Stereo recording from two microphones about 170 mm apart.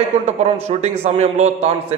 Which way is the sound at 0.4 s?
40° right (ahead or behind).